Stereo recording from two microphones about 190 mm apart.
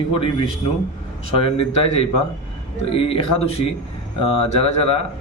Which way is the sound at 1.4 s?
30° left (ahead or behind).